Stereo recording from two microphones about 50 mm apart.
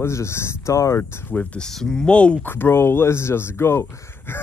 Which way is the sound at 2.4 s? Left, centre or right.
Left.